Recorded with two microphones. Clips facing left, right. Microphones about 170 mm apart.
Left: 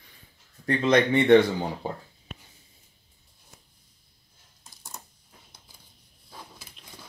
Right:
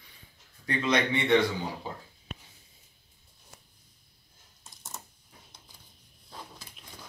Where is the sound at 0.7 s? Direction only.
50° left (ahead or behind).